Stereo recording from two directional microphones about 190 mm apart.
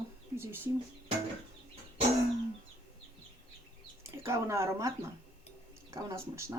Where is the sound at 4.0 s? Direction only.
15° right (ahead or behind).